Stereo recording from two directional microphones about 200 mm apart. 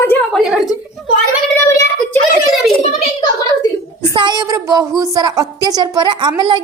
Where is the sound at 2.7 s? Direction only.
25° left (ahead or behind).